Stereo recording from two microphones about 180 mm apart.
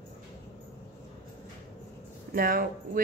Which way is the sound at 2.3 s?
55° right (ahead or behind).